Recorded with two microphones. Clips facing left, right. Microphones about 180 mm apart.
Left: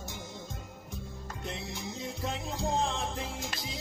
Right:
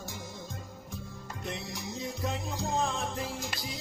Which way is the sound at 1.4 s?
25° left (ahead or behind).